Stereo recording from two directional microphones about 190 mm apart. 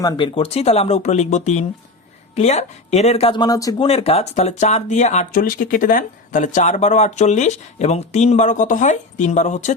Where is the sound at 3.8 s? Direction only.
30° left (ahead or behind).